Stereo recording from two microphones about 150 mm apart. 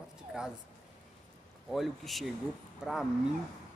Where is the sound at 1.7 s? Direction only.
Centre (ahead or behind).